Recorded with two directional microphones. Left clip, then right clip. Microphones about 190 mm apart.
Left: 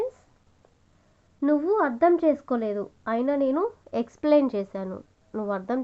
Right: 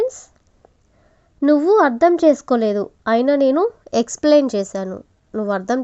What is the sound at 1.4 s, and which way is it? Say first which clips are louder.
A woman's voice: right 9 dB; 40° right (ahead or behind).